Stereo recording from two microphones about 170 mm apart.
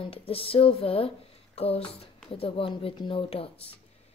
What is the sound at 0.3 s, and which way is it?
Speech, 35° left (ahead or behind).